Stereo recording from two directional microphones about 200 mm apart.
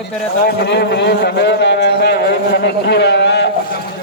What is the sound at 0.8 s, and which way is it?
A man's voice, 55° left (ahead or behind).